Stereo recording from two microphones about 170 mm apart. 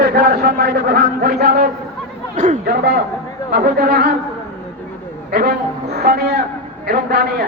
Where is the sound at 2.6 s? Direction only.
75° right (ahead or behind).